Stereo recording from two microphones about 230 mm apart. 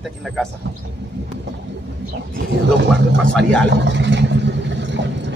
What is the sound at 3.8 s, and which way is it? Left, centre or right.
Vehicle, right.